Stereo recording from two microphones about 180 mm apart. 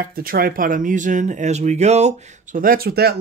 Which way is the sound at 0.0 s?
55° right (ahead or behind).